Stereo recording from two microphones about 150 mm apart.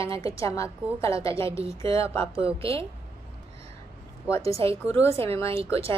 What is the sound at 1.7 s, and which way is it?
Speech, 20° left (ahead or behind).